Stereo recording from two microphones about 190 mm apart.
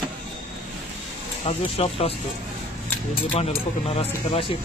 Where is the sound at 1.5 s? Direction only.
30° left (ahead or behind).